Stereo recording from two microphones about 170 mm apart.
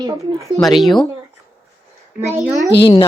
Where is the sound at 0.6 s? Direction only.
Centre (ahead or behind).